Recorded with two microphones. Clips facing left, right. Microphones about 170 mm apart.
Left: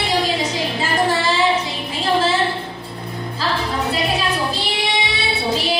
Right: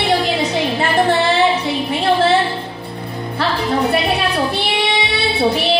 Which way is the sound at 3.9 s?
60° right (ahead or behind).